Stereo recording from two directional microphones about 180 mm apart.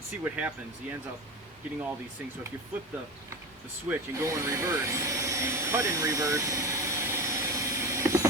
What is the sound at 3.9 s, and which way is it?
Vacuum cleaner, 15° right (ahead or behind).